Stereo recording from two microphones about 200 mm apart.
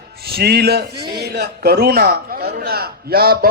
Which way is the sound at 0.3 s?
50° right (ahead or behind).